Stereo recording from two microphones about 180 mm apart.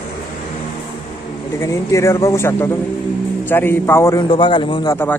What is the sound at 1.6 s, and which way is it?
A man's voice, 15° left (ahead or behind).